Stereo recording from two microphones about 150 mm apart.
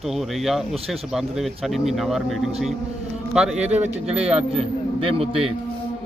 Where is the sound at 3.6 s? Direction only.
45° right (ahead or behind).